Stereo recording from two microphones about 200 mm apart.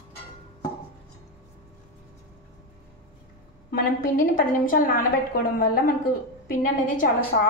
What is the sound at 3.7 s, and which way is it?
A woman's voice, 45° left (ahead or behind).